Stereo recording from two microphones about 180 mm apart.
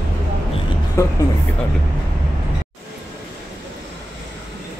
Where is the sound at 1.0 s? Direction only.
15° left (ahead or behind).